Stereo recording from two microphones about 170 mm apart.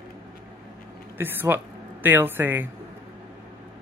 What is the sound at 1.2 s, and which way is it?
A woman's voice, 10° right (ahead or behind).